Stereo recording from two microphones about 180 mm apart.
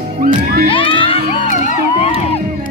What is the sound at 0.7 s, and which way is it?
Children shouting, 30° left (ahead or behind).